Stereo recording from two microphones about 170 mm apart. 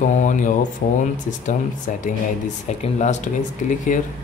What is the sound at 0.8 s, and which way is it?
Speech, 60° left (ahead or behind).